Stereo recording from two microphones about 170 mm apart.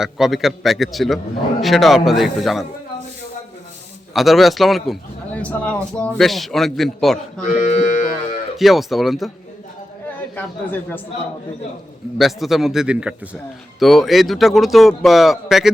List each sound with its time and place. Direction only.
0.0 s speech: centre (ahead or behind)
4.1 s speech: centre (ahead or behind)
7.4 s music: 45° left (ahead or behind)
8.5 s speech: centre (ahead or behind)
10.3 s a man's voice: 10° left (ahead or behind)
12.1 s speech: centre (ahead or behind)